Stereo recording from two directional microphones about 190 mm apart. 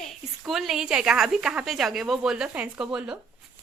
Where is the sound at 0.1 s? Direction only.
Centre (ahead or behind).